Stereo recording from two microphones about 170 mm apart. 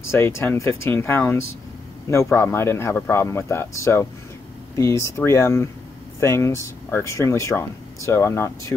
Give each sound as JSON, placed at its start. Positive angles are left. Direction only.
{"t": 0.1, "sound": "speech", "side_deg": 15}